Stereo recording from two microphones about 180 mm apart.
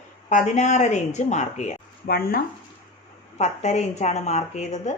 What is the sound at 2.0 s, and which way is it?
Speech, 55° left (ahead or behind).